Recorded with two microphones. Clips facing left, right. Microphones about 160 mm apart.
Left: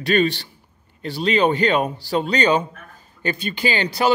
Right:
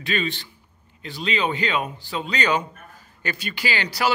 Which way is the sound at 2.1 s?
35° left (ahead or behind).